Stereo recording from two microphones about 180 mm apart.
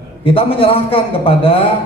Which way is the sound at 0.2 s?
30° left (ahead or behind).